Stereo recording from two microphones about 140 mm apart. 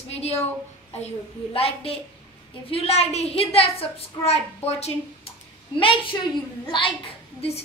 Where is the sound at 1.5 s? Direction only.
45° left (ahead or behind).